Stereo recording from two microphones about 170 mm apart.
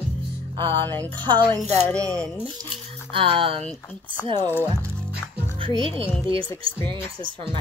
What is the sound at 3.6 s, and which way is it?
Speech, 5° left (ahead or behind).